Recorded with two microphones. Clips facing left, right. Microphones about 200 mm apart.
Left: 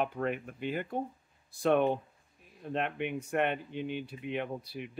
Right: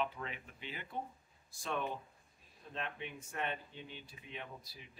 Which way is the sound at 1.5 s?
60° left (ahead or behind).